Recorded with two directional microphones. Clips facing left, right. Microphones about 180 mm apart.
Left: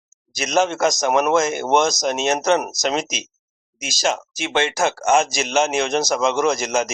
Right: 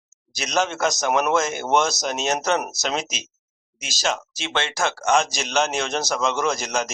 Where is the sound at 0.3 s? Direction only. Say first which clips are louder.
Left 4 dB; centre (ahead or behind).